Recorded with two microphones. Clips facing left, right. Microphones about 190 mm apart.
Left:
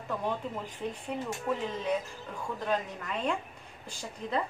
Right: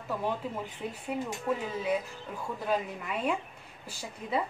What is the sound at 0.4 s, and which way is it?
A woman's voice, 5° right (ahead or behind).